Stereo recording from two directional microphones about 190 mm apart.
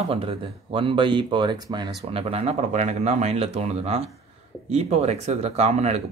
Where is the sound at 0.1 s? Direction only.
30° right (ahead or behind).